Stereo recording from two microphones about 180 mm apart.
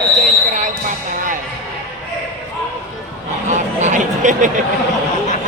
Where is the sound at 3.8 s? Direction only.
45° right (ahead or behind).